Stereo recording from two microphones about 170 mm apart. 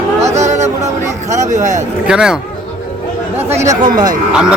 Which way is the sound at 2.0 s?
5° right (ahead or behind).